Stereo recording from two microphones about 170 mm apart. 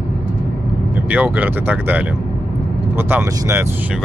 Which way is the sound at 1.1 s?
10° right (ahead or behind).